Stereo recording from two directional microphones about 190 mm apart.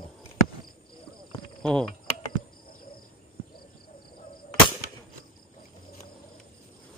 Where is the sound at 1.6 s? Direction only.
5° left (ahead or behind).